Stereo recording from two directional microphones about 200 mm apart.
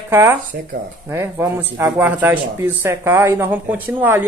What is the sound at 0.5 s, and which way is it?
Speech, 50° right (ahead or behind).